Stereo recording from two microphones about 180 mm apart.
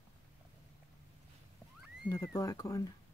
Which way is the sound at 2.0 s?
20° left (ahead or behind).